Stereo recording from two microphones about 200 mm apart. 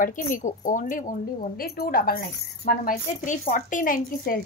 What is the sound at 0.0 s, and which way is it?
A woman's voice, 40° left (ahead or behind).